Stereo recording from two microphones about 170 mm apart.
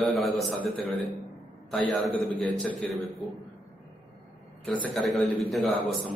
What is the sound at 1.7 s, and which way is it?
A man's voice, 5° left (ahead or behind).